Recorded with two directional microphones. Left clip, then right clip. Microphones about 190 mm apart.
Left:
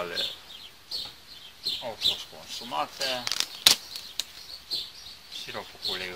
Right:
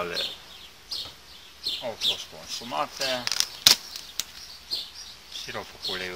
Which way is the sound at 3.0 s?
5° left (ahead or behind).